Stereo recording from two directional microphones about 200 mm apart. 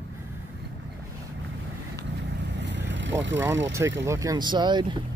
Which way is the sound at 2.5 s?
60° right (ahead or behind).